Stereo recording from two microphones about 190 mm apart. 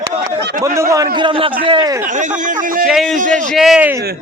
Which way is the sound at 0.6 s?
15° right (ahead or behind).